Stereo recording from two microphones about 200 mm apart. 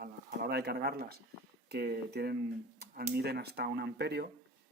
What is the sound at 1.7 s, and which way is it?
Speech, 55° right (ahead or behind).